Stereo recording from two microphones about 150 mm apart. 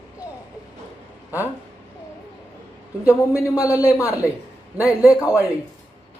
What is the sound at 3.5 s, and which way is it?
Speech, 20° left (ahead or behind).